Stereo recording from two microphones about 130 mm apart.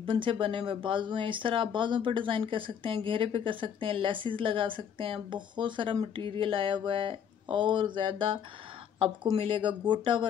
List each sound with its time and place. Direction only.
0.0 s speech: 40° right (ahead or behind)